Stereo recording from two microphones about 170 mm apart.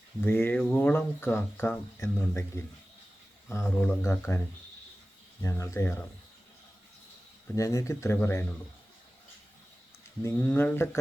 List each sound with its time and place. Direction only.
0.2 s speech: 15° left (ahead or behind)
7.5 s speech: 20° left (ahead or behind)
10.2 s speech: 15° left (ahead or behind)